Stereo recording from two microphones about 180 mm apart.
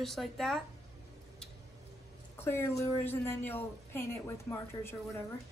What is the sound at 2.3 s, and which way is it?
A woman's voice, 15° left (ahead or behind).